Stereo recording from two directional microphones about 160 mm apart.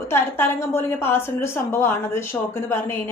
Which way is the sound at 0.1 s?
15° left (ahead or behind).